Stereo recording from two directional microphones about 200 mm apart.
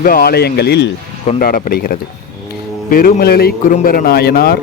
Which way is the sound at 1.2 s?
40° left (ahead or behind).